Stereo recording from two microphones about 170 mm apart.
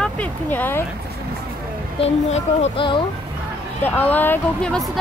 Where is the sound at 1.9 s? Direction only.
40° left (ahead or behind).